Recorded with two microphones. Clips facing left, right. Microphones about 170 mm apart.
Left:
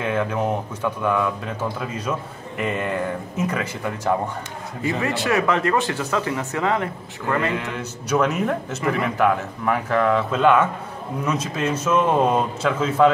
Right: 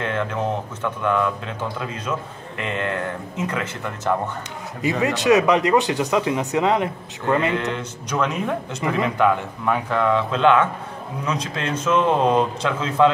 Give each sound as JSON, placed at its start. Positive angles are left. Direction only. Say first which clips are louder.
{"t": 0.0, "sound": "speech", "louder": "left 2 dB", "side_deg": 10}
{"t": 4.8, "sound": "speech", "louder": "right 4 dB", "side_deg": -20}
{"t": 7.7, "sound": "speech", "louder": "left 3 dB", "side_deg": 5}